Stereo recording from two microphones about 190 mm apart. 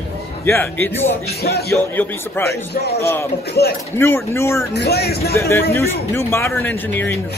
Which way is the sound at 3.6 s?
60° left (ahead or behind).